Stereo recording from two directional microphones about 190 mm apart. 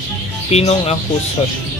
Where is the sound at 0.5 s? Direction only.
35° left (ahead or behind).